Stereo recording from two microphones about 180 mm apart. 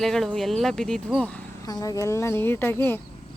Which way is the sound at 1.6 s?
20° left (ahead or behind).